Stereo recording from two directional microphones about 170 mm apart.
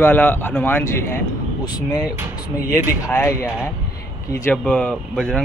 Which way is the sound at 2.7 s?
15° left (ahead or behind).